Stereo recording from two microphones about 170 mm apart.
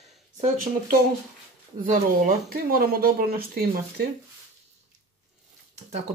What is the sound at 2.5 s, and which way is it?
Speech, 60° right (ahead or behind).